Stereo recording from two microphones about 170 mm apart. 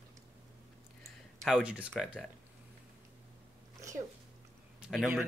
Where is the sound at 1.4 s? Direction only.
5° right (ahead or behind).